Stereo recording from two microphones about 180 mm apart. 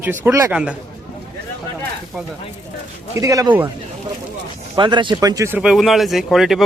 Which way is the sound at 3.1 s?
20° right (ahead or behind).